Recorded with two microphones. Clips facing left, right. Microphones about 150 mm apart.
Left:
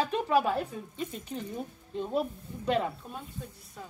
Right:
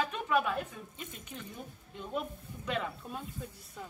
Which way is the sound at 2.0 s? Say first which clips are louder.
Left 7 dB; 35° left (ahead or behind).